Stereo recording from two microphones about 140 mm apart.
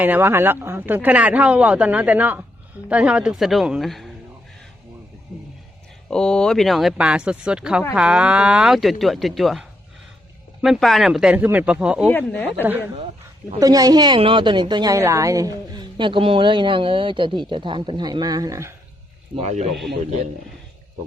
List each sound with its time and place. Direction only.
0.0 s speech: 15° right (ahead or behind)
6.1 s speech: 5° left (ahead or behind)
12.0 s speech: 15° left (ahead or behind)
12.6 s speech: 15° right (ahead or behind)
13.6 s a woman's voice: 25° right (ahead or behind)
19.4 s speech: 55° right (ahead or behind)